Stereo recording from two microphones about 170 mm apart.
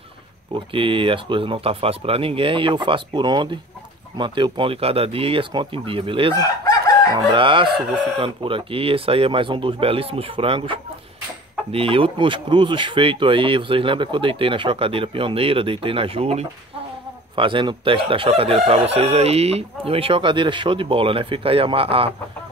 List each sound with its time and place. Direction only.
0.6 s speech: 30° right (ahead or behind)
7.3 s speech: 30° right (ahead or behind)